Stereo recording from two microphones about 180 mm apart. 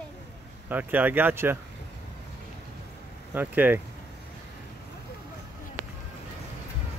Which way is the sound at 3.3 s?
10° right (ahead or behind).